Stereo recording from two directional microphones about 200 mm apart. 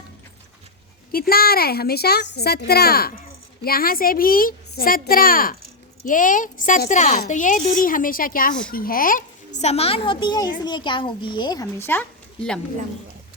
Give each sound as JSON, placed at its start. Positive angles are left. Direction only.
{"t": 1.1, "sound": "a child's voice", "side_deg": 50}